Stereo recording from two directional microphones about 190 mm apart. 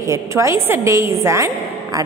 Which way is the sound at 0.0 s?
15° right (ahead or behind).